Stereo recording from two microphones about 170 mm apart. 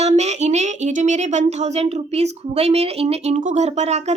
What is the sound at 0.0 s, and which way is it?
A woman's voice, 40° right (ahead or behind).